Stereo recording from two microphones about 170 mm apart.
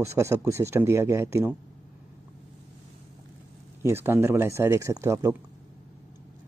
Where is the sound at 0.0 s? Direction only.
15° right (ahead or behind).